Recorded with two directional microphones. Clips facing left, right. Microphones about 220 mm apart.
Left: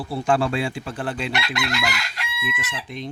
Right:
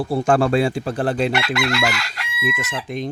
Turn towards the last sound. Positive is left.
turn(degrees=-45)  # may be behind; listen again after turning